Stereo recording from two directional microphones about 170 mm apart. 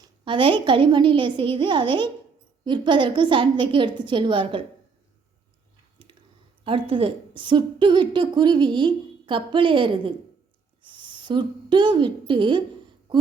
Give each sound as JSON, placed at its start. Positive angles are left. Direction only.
{"t": 0.3, "sound": "a woman's voice", "side_deg": -30}
{"t": 6.7, "sound": "a woman's voice", "side_deg": -30}
{"t": 13.1, "sound": "a sound", "side_deg": -30}